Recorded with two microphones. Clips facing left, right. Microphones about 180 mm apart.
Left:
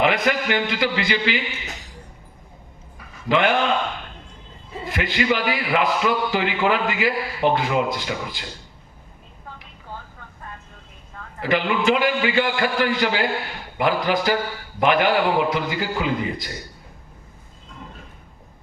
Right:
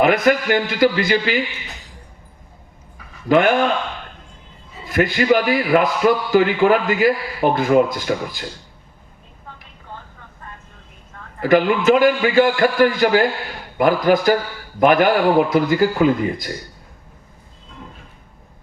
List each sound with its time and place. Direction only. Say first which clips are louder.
0.0 s a man's voice: right 5 dB; 45° right (ahead or behind)
3.2 s a man's voice: right 5 dB; 45° right (ahead or behind)
4.9 s a man's voice: right 6 dB; 45° right (ahead or behind)
11.3 s a man's voice: right 6 dB; 45° right (ahead or behind)